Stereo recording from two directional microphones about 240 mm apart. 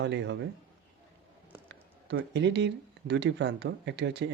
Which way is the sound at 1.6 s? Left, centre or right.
Right.